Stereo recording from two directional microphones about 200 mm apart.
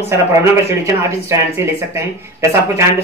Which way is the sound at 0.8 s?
15° right (ahead or behind).